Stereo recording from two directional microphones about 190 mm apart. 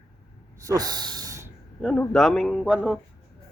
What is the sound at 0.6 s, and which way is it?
Snort, 20° right (ahead or behind).